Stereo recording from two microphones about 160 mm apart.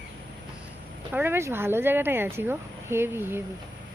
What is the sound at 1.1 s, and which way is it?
Speech, 15° right (ahead or behind).